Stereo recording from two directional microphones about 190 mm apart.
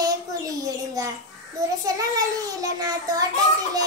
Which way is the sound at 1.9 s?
20° right (ahead or behind).